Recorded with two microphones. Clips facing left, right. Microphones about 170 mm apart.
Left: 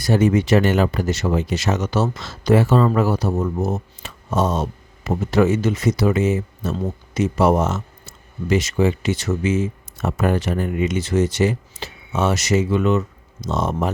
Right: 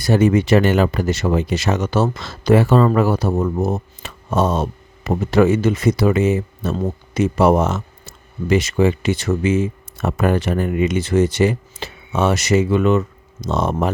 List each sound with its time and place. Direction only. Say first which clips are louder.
0.0 s speech: right 2 dB; 65° right (ahead or behind)